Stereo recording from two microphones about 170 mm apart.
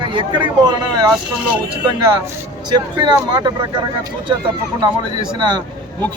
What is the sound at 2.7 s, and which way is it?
Speech, 25° right (ahead or behind).